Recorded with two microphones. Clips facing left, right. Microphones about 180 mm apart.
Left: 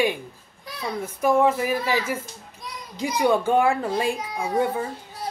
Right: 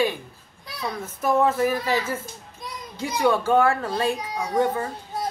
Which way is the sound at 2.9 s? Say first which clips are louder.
Left 1 dB; 15° left (ahead or behind).